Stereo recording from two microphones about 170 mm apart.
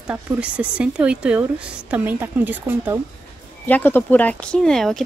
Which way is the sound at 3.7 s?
10° left (ahead or behind).